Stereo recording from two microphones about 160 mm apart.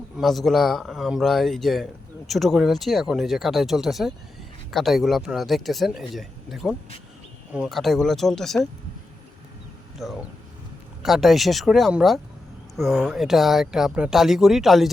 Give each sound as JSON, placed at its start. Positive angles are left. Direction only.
{"t": 0.2, "sound": "speech", "side_deg": 0}
{"t": 10.0, "sound": "speech", "side_deg": 0}